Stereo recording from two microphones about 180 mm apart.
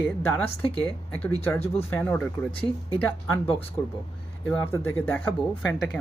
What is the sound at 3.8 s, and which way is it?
Speech, 20° left (ahead or behind).